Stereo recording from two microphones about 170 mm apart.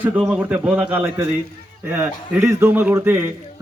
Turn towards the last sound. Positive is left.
turn(degrees=-15)  # may be behind; listen again after turning